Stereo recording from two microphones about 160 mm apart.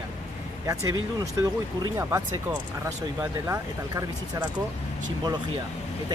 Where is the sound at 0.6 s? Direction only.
20° right (ahead or behind).